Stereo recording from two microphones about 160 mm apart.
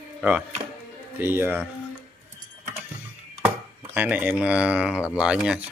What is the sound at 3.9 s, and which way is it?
Speech, 10° right (ahead or behind).